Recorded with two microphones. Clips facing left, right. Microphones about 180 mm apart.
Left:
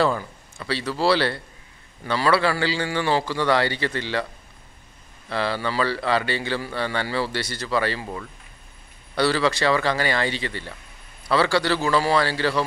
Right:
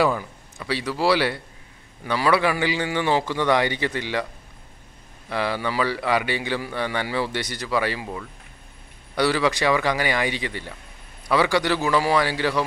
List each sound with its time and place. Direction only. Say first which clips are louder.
0.0 s a man's voice: even; 15° right (ahead or behind)
5.3 s a man's voice: even; 15° right (ahead or behind)
9.1 s a man's voice: even; 15° right (ahead or behind)